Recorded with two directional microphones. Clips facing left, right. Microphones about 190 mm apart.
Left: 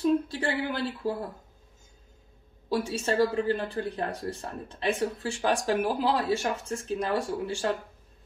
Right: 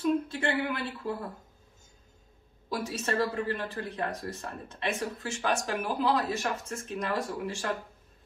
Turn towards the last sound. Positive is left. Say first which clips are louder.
# left 4 dB
turn(degrees=30)  # may be behind; listen again after turning